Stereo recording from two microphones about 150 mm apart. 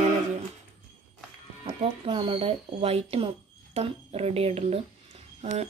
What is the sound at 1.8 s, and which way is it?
Speech, 35° right (ahead or behind).